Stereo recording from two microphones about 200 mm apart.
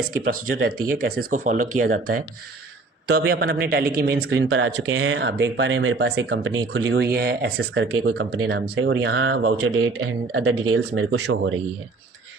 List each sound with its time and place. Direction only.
0.9 s speech: 45° right (ahead or behind); by 6.1 s 85° right
6.2 s speech: 65° right (ahead or behind); by 10.8 s 90° right
10.9 s speech: 75° right (ahead or behind)